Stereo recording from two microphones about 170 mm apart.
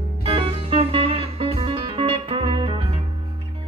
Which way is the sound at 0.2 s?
35° right (ahead or behind).